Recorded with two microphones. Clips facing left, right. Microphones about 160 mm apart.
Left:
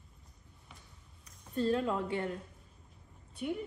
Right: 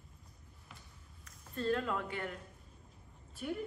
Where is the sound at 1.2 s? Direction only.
25° left (ahead or behind).